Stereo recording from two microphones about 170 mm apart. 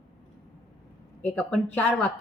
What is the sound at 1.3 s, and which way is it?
Speech, 5° left (ahead or behind).